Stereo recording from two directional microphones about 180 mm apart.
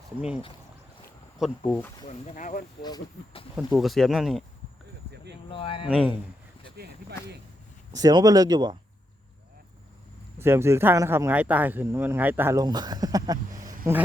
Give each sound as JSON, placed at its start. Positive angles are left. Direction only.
{"t": 0.2, "sound": "speech", "side_deg": -5}
{"t": 2.0, "sound": "speech", "side_deg": 40}
{"t": 2.8, "sound": "speech", "side_deg": 25}
{"t": 3.5, "sound": "speech", "side_deg": 0}
{"t": 5.1, "sound": "a sound", "side_deg": -65}
{"t": 5.5, "sound": "speech", "side_deg": 30}
{"t": 5.9, "sound": "speech", "side_deg": -5}
{"t": 7.9, "sound": "speech", "side_deg": -20}
{"t": 10.3, "sound": "speech", "side_deg": -15}